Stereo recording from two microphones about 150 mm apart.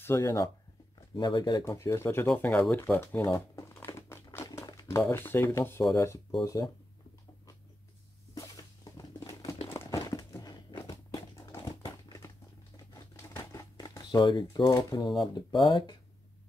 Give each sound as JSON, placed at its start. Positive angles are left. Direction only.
{"t": 0.0, "sound": "speech", "side_deg": 15}
{"t": 2.8, "sound": "crumpling", "side_deg": 15}
{"t": 4.6, "sound": "speech", "side_deg": 25}
{"t": 8.4, "sound": "patter", "side_deg": 25}
{"t": 9.7, "sound": "a sound", "side_deg": 20}
{"t": 12.7, "sound": "crumpling", "side_deg": 20}